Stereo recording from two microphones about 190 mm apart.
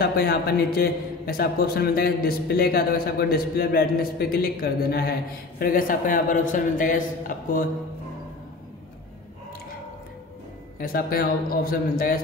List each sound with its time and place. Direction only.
0.0 s a man's voice: 55° left (ahead or behind)
10.8 s a man's voice: 50° left (ahead or behind)